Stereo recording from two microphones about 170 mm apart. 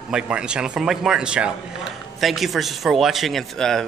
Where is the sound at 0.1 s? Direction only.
5° right (ahead or behind).